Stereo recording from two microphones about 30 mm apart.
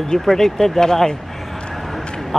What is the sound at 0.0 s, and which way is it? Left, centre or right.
A man's voice, centre.